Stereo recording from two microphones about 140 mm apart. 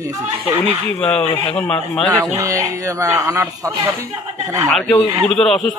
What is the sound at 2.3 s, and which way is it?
Speech, 25° right (ahead or behind).